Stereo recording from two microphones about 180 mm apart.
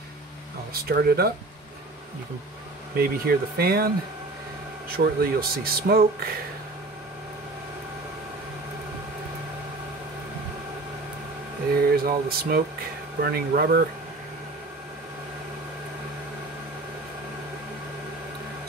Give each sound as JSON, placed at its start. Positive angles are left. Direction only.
{"t": 0.8, "sound": "speech", "side_deg": -60}
{"t": 3.0, "sound": "speech", "side_deg": -60}
{"t": 11.9, "sound": "speech", "side_deg": -55}